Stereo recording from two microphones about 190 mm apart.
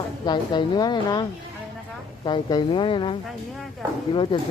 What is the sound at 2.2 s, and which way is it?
A woman's voice, 25° left (ahead or behind).